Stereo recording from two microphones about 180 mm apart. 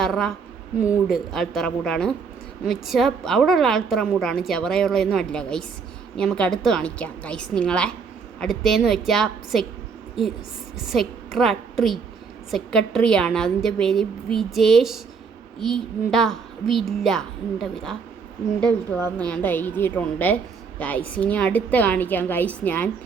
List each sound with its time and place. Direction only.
0.0 s a woman's voice: centre (ahead or behind)
10.8 s a woman's voice: centre (ahead or behind)
19.2 s a woman's voice: 10° left (ahead or behind)